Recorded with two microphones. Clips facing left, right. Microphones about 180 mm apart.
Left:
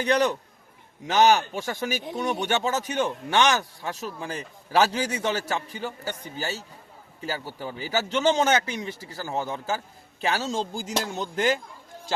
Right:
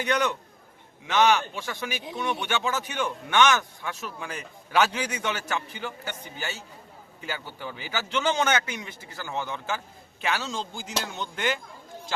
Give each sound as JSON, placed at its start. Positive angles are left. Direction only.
{"t": 0.0, "sound": "a man's voice", "side_deg": 35}